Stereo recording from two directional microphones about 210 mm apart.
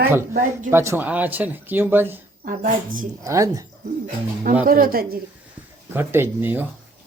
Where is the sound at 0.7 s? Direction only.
10° right (ahead or behind).